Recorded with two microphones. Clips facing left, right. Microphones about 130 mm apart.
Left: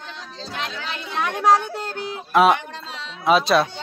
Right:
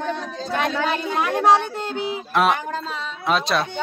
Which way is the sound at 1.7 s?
Centre (ahead or behind).